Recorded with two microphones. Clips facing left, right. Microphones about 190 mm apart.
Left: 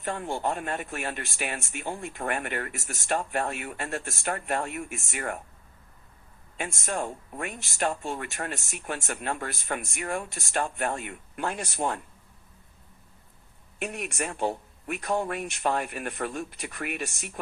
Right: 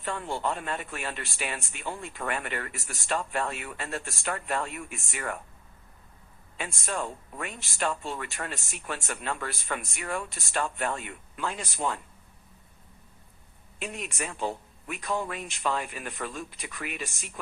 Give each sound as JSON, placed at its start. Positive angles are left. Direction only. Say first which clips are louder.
{"t": 0.0, "sound": "speech", "louder": "left 2 dB", "side_deg": 50}
{"t": 6.6, "sound": "speech", "louder": "left 2 dB", "side_deg": 50}
{"t": 13.7, "sound": "a man's voice", "louder": "left 3 dB", "side_deg": 55}